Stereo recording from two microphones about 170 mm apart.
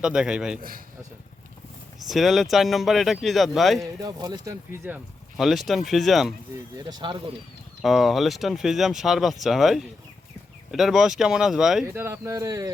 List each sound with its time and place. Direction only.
0.0 s speech: 5° right (ahead or behind)
2.0 s speech: centre (ahead or behind)
4.0 s speech: 20° right (ahead or behind)
5.4 s speech: centre (ahead or behind)
6.8 s speech: 30° right (ahead or behind)
7.8 s speech: centre (ahead or behind)
11.9 s speech: 15° right (ahead or behind)